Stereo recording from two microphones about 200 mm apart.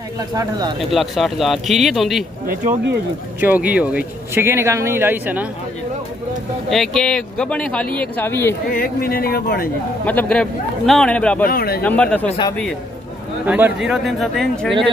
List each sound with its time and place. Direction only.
0.3 s speech: 20° right (ahead or behind)
0.7 s speech: centre (ahead or behind)
2.4 s speech: 40° right (ahead or behind)
3.3 s speech: 10° right (ahead or behind)
6.7 s speech: centre (ahead or behind)
8.7 s a man's voice: 50° left (ahead or behind)
10.0 s speech: 5° left (ahead or behind)
11.4 s a man's voice: 50° left (ahead or behind)
11.8 s speech: 5° left (ahead or behind)
12.3 s a man's voice: 25° left (ahead or behind)
13.5 s speech: 10° right (ahead or behind)